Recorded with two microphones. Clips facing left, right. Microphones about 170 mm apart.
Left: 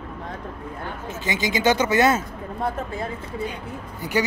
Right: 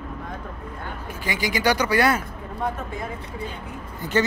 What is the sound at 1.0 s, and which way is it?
Speech, 20° left (ahead or behind).